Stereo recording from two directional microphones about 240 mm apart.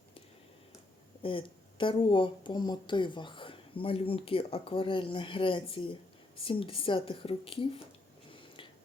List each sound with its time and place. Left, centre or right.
1.2 s a woman's voice: left